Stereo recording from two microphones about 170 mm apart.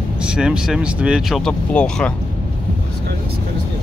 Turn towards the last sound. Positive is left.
turn(degrees=5)  # may be behind; listen again after turning